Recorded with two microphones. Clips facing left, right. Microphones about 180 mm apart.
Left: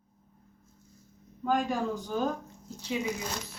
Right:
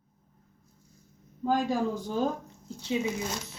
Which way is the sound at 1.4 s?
30° right (ahead or behind).